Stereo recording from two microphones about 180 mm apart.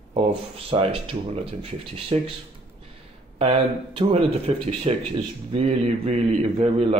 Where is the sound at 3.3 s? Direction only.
30° right (ahead or behind).